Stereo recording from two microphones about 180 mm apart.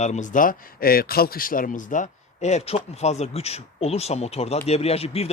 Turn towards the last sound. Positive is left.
turn(degrees=35)  # may be behind; listen again after turning